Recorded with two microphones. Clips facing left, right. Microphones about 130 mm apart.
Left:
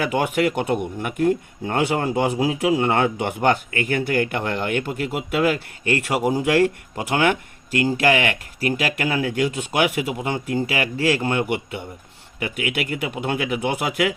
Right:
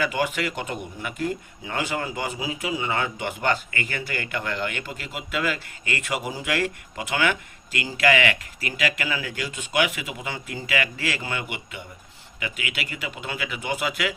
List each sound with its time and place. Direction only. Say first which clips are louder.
0.2 s speech: left 6 dB; 60° left (ahead or behind); by 8.9 s 40° left (ahead or behind)
9.0 s speech: left 8 dB; 55° left (ahead or behind)